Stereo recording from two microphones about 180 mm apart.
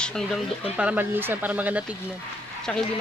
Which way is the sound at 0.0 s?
Centre (ahead or behind).